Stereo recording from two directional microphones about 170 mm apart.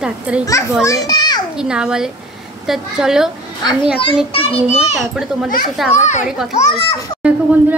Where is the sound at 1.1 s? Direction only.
25° left (ahead or behind).